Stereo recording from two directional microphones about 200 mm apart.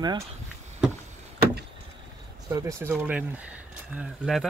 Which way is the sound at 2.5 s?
15° right (ahead or behind).